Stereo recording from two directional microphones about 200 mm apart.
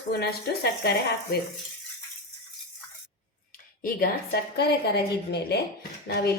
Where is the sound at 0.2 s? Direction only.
50° left (ahead or behind).